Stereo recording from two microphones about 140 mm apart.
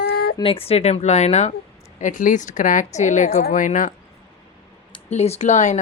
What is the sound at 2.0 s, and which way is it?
A woman's voice, 65° left (ahead or behind).